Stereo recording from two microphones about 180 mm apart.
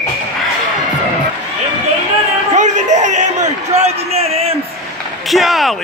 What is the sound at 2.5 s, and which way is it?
A man's voice, 40° right (ahead or behind).